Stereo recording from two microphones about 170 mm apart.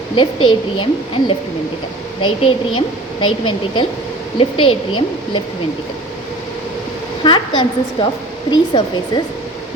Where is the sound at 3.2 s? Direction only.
30° left (ahead or behind).